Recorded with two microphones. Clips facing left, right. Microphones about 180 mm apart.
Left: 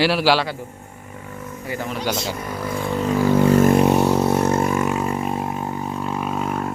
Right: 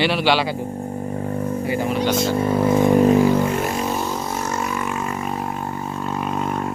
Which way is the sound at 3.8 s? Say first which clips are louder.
Left 8 dB; 65° left (ahead or behind).